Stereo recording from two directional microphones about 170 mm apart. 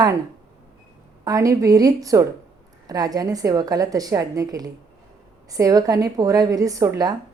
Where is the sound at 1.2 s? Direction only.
20° right (ahead or behind).